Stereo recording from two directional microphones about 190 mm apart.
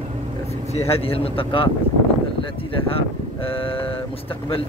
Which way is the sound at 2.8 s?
30° left (ahead or behind).